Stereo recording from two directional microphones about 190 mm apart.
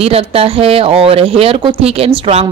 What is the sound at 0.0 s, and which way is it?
Speech, 30° right (ahead or behind).